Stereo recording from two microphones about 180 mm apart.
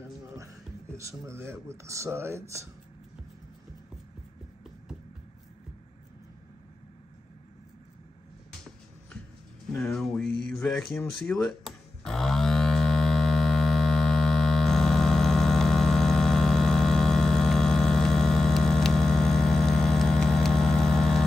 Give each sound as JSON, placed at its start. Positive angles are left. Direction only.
{"t": 0.9, "sound": "speech", "side_deg": -15}
{"t": 9.8, "sound": "speech", "side_deg": 5}
{"t": 10.5, "sound": "a sound", "side_deg": 5}